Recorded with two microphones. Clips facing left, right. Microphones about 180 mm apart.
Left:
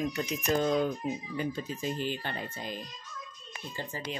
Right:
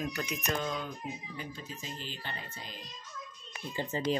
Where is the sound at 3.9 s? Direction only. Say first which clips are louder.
Right 10 dB; 25° right (ahead or behind).